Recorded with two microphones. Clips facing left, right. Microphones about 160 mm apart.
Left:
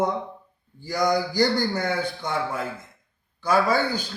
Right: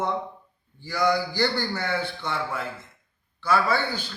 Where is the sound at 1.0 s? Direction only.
40° left (ahead or behind).